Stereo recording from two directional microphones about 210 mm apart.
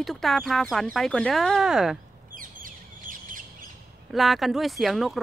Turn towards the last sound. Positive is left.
turn(degrees=0)  # may be behind; listen again after turning